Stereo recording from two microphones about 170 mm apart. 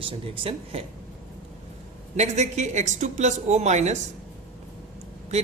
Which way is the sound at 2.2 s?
40° right (ahead or behind).